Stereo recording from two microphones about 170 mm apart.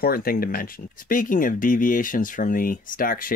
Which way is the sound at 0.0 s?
60° left (ahead or behind).